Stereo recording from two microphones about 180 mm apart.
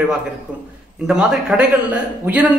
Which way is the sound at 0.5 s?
5° right (ahead or behind).